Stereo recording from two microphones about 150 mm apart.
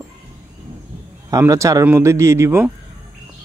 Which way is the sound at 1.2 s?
20° right (ahead or behind).